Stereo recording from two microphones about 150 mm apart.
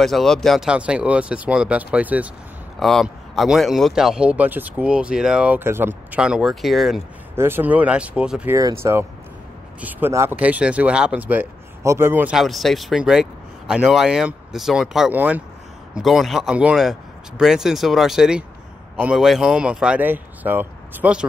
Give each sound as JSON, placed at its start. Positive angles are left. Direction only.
{"t": 0.0, "sound": "speech", "side_deg": 0}
{"t": 2.8, "sound": "speech", "side_deg": 0}
{"t": 7.3, "sound": "speech", "side_deg": -15}
{"t": 8.5, "sound": "speech", "side_deg": -20}
{"t": 12.4, "sound": "speech", "side_deg": 0}